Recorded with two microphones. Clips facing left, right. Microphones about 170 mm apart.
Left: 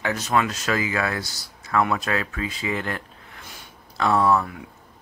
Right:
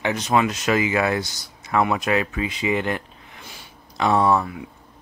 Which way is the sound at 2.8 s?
15° right (ahead or behind).